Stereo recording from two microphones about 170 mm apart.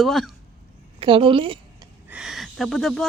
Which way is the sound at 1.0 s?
30° right (ahead or behind).